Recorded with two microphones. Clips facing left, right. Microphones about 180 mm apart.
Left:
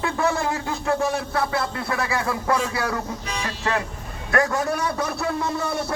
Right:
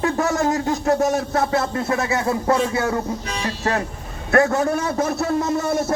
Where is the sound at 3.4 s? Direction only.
35° right (ahead or behind).